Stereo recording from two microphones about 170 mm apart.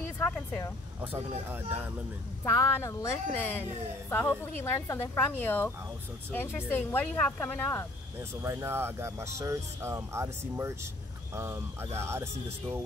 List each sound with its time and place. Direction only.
0.2 s vehicle: 5° left (ahead or behind)
1.5 s speech: 10° right (ahead or behind)
2.4 s a woman's voice: 15° left (ahead or behind)
8.2 s speech: 15° right (ahead or behind)